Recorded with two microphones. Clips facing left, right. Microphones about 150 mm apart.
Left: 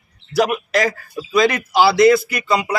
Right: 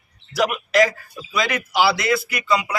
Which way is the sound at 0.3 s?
40° left (ahead or behind).